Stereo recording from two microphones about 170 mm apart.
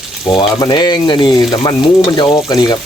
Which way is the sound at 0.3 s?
25° left (ahead or behind).